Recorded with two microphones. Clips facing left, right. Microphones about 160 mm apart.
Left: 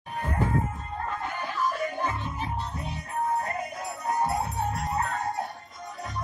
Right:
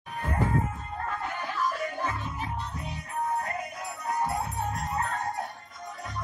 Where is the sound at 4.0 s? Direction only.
30° left (ahead or behind).